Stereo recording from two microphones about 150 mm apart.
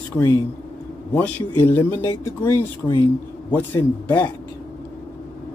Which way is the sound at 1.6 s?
15° left (ahead or behind).